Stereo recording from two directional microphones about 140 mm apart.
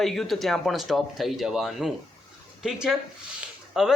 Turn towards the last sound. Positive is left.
turn(degrees=-5)  # may be behind; listen again after turning